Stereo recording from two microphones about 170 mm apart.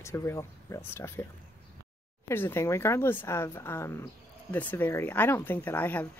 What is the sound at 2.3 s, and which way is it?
Speech, 15° left (ahead or behind).